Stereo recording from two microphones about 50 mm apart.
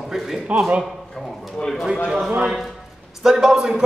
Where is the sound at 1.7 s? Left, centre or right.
Centre.